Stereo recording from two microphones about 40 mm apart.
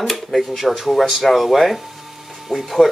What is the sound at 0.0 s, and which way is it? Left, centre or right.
Speech, centre.